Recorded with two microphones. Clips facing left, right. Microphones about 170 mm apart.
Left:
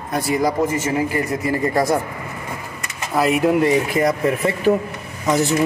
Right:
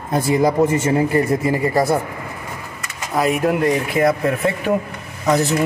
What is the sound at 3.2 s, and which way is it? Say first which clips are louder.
Speech: left 1 dB; centre (ahead or behind).